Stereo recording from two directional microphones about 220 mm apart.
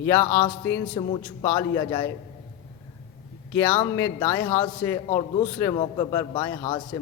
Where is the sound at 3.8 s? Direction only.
15° left (ahead or behind).